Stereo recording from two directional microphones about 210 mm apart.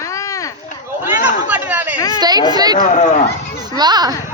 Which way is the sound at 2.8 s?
35° left (ahead or behind).